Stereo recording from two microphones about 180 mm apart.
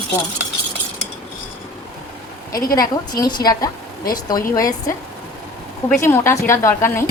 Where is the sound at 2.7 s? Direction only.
20° left (ahead or behind).